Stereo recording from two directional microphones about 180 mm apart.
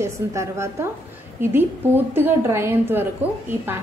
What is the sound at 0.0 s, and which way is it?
A woman's voice, 15° right (ahead or behind).